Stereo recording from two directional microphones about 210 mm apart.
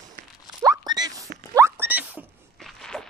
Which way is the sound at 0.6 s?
15° right (ahead or behind).